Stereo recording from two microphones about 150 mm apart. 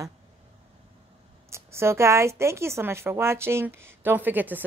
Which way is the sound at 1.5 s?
15° right (ahead or behind).